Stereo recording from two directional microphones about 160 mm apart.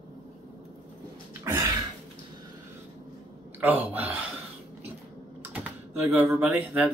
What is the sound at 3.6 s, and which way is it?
Speech, 10° right (ahead or behind).